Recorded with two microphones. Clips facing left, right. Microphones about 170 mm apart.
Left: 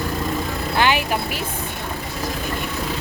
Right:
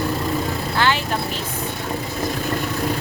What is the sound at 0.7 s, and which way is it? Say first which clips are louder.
Vehicle: left 2 dB; 15° left (ahead or behind).